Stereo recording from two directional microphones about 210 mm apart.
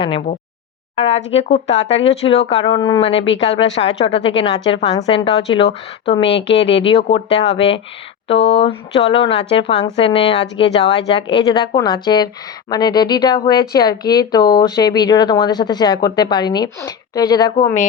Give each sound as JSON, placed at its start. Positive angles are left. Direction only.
{"t": 0.9, "sound": "a woman's voice", "side_deg": 30}